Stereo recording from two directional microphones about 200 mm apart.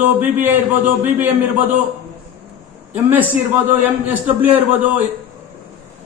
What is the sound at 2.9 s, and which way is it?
A man's voice, 10° right (ahead or behind).